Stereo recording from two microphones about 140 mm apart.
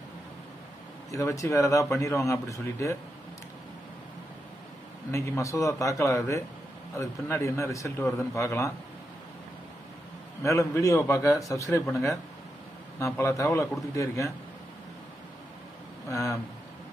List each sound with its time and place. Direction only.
1.1 s speech: 25° left (ahead or behind)
5.1 s speech: 20° left (ahead or behind)
10.4 s speech: 20° left (ahead or behind)
16.1 s speech: 25° left (ahead or behind)